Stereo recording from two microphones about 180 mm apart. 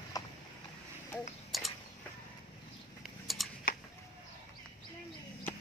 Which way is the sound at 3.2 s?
Centre (ahead or behind).